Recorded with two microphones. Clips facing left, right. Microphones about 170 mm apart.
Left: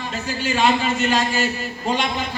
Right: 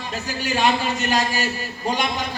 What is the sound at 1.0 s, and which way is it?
Speech, 40° right (ahead or behind).